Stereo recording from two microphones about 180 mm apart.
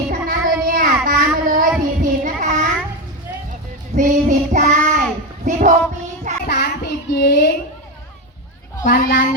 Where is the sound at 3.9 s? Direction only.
45° right (ahead or behind).